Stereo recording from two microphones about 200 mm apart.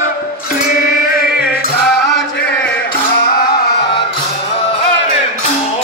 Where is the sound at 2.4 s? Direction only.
55° left (ahead or behind).